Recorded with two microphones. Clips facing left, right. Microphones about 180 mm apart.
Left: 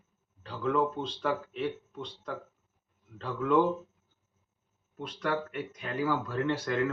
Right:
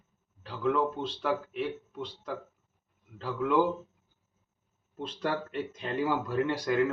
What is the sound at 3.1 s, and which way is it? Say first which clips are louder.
Speech: even; 5° right (ahead or behind).